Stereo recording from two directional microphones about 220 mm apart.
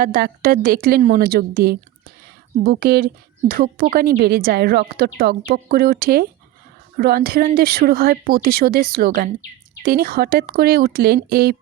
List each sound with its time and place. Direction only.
0.0 s speech: 40° right (ahead or behind)